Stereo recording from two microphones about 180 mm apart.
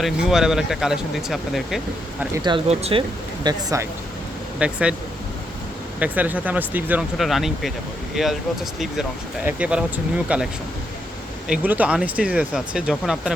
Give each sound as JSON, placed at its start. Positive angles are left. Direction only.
{"t": 0.0, "sound": "speech", "side_deg": 0}
{"t": 2.3, "sound": "speech", "side_deg": -25}
{"t": 2.6, "sound": "speech", "side_deg": -35}
{"t": 3.4, "sound": "speech", "side_deg": -20}
{"t": 4.6, "sound": "speech", "side_deg": -5}
{"t": 6.0, "sound": "speech", "side_deg": -10}